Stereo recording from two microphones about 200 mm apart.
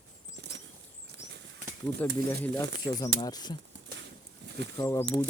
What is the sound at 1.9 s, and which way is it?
Speech, 10° left (ahead or behind).